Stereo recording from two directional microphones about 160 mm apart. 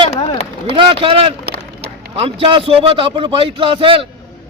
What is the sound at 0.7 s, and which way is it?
A man's voice, 35° right (ahead or behind).